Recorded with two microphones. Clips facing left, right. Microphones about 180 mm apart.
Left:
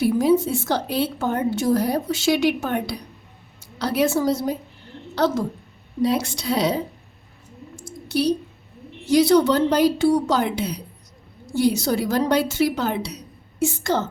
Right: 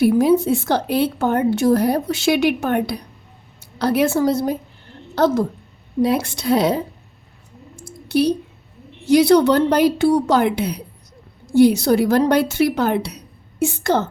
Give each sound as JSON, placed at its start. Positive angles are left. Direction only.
{"t": 0.0, "sound": "a woman's voice", "side_deg": -60}
{"t": 8.0, "sound": "a sound", "side_deg": -55}
{"t": 9.0, "sound": "a woman's voice", "side_deg": -65}